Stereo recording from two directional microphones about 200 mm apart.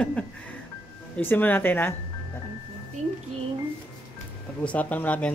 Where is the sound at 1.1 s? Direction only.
10° left (ahead or behind).